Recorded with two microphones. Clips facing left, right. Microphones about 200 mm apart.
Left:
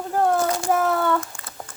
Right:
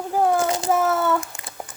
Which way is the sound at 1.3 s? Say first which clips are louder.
Right 1 dB; 20° right (ahead or behind).